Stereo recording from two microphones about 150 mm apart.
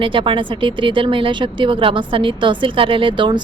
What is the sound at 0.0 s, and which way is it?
Speech, 35° right (ahead or behind).